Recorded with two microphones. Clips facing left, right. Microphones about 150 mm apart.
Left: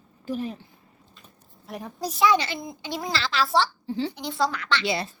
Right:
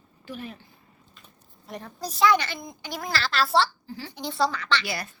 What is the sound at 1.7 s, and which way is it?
Speech, centre (ahead or behind).